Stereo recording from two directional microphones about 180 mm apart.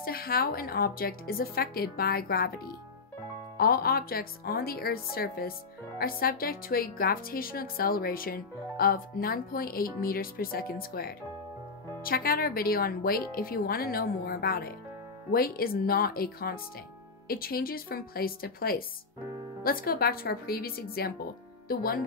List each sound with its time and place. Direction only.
0.0 s speech: 55° left (ahead or behind)
3.5 s speech: 55° left (ahead or behind)